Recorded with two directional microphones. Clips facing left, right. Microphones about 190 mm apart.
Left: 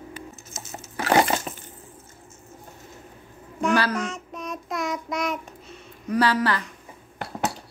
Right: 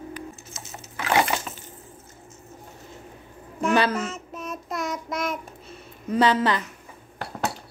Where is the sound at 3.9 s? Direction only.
5° right (ahead or behind).